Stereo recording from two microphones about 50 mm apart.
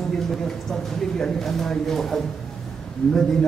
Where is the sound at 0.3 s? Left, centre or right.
Centre.